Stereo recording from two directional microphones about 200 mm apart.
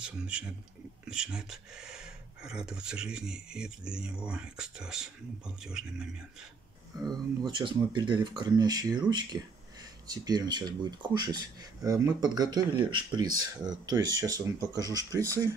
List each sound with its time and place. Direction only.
0.0 s speech: 5° right (ahead or behind)
7.1 s speech: 20° right (ahead or behind)